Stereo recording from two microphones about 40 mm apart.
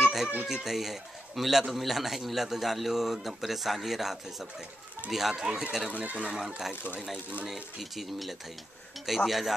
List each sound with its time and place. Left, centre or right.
0.0 s baby cry: centre
0.5 s speech: centre
5.4 s speech: centre
5.9 s speech: right
6.2 s speech: centre